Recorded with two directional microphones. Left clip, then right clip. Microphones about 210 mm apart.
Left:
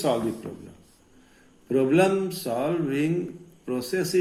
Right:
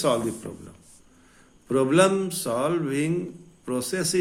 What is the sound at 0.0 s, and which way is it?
A man's voice, 40° right (ahead or behind).